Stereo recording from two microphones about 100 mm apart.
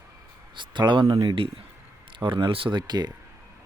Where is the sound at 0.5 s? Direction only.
50° right (ahead or behind).